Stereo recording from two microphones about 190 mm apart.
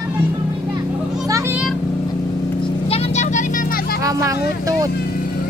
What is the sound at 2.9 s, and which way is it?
Vehicle, 35° left (ahead or behind).